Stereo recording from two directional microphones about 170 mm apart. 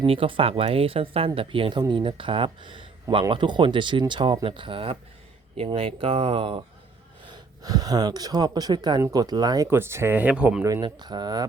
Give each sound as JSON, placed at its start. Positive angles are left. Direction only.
{"t": 0.0, "sound": "speech", "side_deg": -30}
{"t": 7.3, "sound": "speech", "side_deg": -25}
{"t": 10.7, "sound": "speech", "side_deg": -20}